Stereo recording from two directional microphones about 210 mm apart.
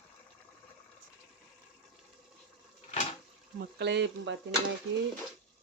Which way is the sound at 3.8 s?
55° right (ahead or behind).